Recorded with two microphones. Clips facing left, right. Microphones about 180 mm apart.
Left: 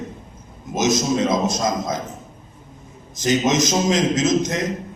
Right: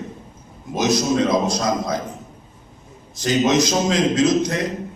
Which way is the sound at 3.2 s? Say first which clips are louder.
Right 1 dB; 20° left (ahead or behind).